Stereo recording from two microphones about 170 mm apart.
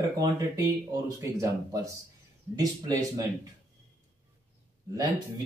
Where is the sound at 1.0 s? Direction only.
20° right (ahead or behind).